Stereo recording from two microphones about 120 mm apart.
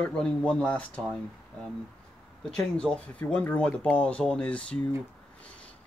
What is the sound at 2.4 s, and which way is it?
Speech, 5° left (ahead or behind).